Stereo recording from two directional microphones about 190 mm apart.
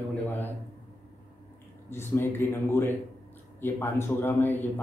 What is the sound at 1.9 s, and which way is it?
A man's voice, 10° left (ahead or behind).